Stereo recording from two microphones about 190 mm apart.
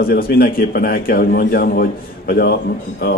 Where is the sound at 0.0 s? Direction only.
55° left (ahead or behind).